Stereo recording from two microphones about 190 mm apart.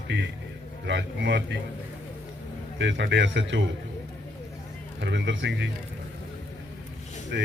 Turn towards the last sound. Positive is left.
turn(degrees=-65)  # may be behind; listen again after turning